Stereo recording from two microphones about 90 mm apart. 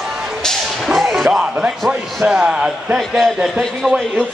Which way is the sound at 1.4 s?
10° right (ahead or behind).